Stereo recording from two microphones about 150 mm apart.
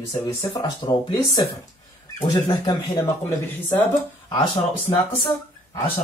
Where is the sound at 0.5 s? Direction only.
25° left (ahead or behind).